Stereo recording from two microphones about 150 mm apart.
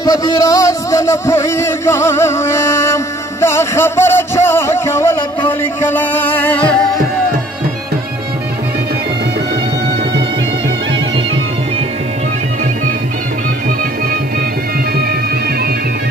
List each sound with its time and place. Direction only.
0.0 s music: 25° left (ahead or behind); by 7.0 s 5° left (ahead or behind)